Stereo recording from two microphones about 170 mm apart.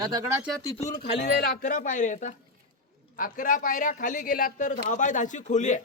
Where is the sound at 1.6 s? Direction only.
50° left (ahead or behind).